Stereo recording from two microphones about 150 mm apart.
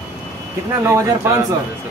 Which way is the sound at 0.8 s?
15° right (ahead or behind).